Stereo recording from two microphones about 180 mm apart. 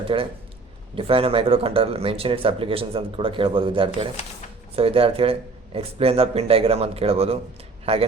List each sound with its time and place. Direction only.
0.1 s a man's voice: 30° right (ahead or behind)